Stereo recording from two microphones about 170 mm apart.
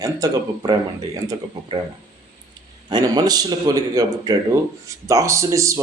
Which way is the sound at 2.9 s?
25° right (ahead or behind).